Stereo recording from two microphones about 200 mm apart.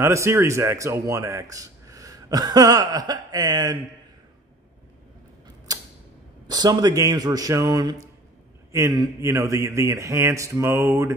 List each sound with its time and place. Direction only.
0.0 s a man's voice: 15° right (ahead or behind)
5.7 s creak: 20° right (ahead or behind)
6.5 s a man's voice: 20° right (ahead or behind)